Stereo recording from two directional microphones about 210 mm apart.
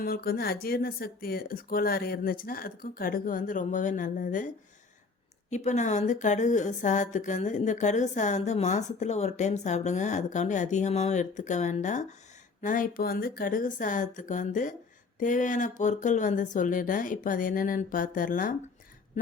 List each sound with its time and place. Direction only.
0.0 s speech: 45° left (ahead or behind)
5.5 s a woman's voice: 35° left (ahead or behind)